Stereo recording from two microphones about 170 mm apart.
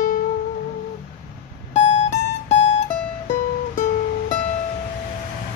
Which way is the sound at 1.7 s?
40° left (ahead or behind).